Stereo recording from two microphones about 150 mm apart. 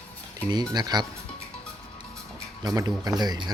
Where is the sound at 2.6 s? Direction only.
25° right (ahead or behind).